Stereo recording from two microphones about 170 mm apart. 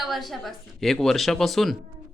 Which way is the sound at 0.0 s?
Centre (ahead or behind).